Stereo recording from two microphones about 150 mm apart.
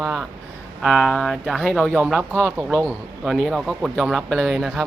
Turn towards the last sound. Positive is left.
turn(degrees=0)  # may be behind; listen again after turning